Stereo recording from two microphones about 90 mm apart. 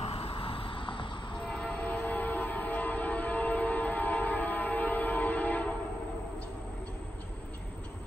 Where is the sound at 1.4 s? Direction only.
10° left (ahead or behind).